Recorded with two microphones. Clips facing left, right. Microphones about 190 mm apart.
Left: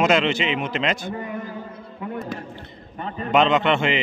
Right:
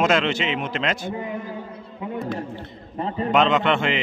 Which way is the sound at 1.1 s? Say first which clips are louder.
Right 1 dB; 15° right (ahead or behind).